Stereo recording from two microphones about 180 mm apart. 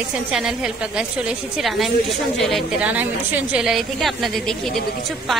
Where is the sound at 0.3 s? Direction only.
5° right (ahead or behind).